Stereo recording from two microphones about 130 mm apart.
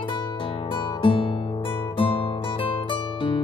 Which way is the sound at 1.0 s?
40° left (ahead or behind).